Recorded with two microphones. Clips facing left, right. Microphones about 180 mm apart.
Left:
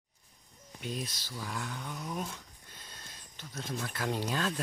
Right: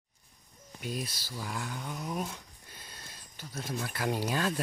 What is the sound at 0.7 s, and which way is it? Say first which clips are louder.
Speech: right 1 dB; 5° right (ahead or behind).